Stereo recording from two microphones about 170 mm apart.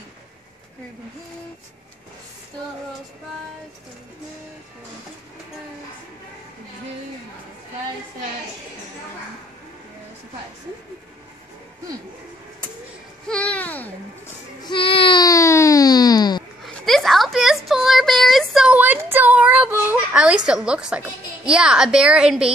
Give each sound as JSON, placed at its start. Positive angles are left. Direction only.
{"t": 13.3, "sound": "babbling", "side_deg": 5}
{"t": 14.7, "sound": "baby cry", "side_deg": 30}
{"t": 16.6, "sound": "a sound", "side_deg": 0}